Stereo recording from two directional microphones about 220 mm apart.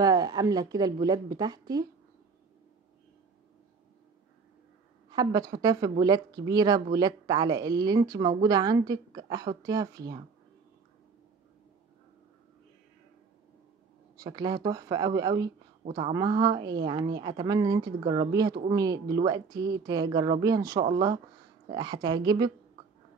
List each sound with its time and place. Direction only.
0.0 s speech: 15° right (ahead or behind)
5.1 s speech: 15° right (ahead or behind)
14.1 s a woman's voice: 15° right (ahead or behind)